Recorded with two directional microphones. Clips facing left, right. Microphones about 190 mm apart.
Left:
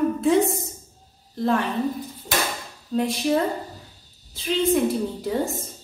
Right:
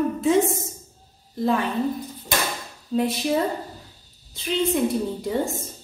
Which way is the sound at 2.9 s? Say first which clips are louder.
Even; 5° right (ahead or behind).